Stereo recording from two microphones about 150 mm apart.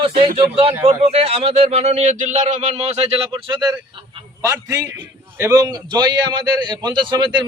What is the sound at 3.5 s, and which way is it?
A man's voice, 30° right (ahead or behind).